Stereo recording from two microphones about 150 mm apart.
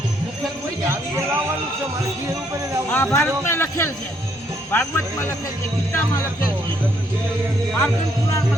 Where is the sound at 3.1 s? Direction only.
15° left (ahead or behind).